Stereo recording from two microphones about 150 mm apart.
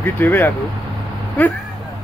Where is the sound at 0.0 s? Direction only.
15° left (ahead or behind).